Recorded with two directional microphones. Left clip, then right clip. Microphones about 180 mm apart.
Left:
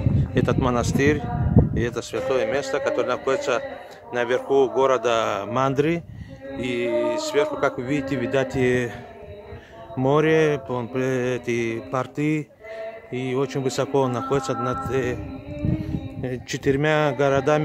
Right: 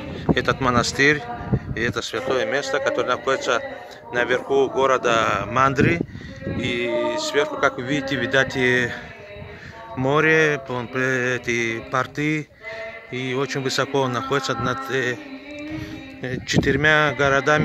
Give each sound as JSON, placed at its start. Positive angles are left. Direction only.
{"t": 0.3, "sound": "a man's voice", "side_deg": 20}
{"t": 9.9, "sound": "a man's voice", "side_deg": 20}
{"t": 16.2, "sound": "a man's voice", "side_deg": 15}